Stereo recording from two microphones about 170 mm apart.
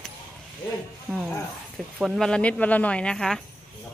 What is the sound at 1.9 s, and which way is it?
Speech, centre (ahead or behind).